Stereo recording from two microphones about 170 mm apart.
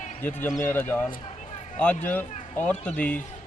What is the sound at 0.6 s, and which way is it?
Speech, 10° left (ahead or behind).